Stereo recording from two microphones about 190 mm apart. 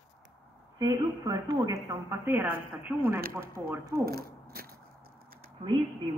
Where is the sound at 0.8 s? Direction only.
20° right (ahead or behind).